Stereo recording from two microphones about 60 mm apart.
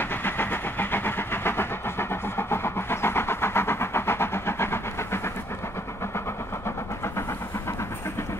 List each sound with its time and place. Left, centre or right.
0.0 s vehicle: left